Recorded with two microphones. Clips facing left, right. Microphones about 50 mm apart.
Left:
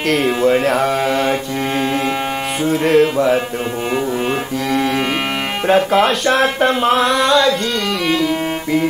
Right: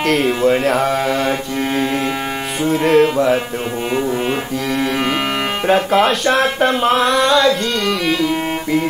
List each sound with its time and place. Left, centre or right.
0.0 s speech: centre
2.6 s speech: centre
8.1 s music: centre